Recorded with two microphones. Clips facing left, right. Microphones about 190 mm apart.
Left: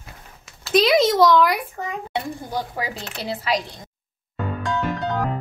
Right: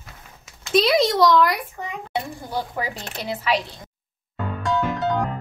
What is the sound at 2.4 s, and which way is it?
A woman's voice, 40° left (ahead or behind).